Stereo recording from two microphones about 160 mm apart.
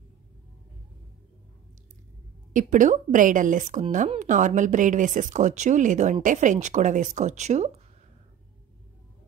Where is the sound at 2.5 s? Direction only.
55° right (ahead or behind).